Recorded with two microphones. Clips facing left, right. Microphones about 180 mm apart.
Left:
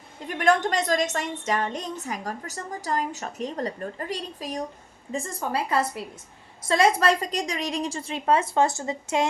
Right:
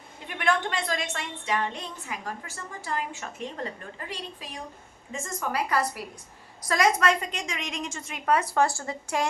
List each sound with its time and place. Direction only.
0.3 s a woman's voice: 40° left (ahead or behind); by 9.2 s 20° left (ahead or behind)